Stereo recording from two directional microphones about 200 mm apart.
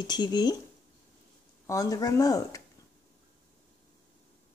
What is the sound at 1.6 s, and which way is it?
Speech, 15° left (ahead or behind).